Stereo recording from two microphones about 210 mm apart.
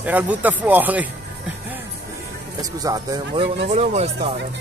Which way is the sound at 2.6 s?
15° right (ahead or behind).